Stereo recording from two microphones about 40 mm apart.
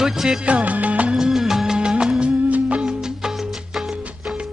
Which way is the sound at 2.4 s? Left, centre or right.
Right.